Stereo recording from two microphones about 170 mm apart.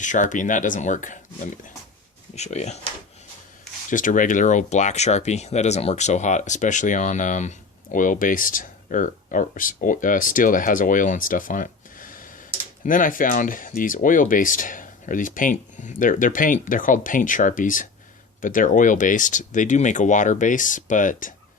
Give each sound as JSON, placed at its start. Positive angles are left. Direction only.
{"t": 0.0, "sound": "speech", "side_deg": 50}
{"t": 2.3, "sound": "speech", "side_deg": 40}
{"t": 3.8, "sound": "speech", "side_deg": 50}